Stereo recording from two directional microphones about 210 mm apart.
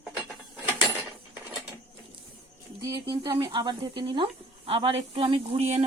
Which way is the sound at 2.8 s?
15° right (ahead or behind).